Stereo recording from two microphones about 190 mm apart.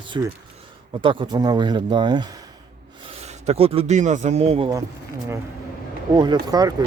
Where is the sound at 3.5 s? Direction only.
30° right (ahead or behind).